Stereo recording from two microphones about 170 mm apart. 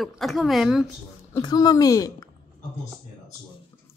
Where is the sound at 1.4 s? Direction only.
25° left (ahead or behind).